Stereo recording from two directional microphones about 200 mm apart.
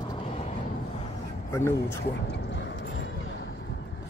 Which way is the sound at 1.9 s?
60° left (ahead or behind).